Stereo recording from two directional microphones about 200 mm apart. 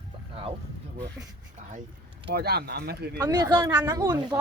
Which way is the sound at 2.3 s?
50° right (ahead or behind).